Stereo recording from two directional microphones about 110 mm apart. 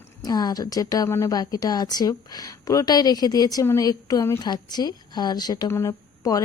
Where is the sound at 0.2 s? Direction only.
35° left (ahead or behind).